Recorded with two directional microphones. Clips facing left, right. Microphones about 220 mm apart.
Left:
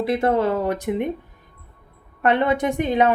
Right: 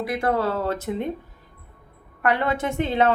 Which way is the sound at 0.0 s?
25° left (ahead or behind).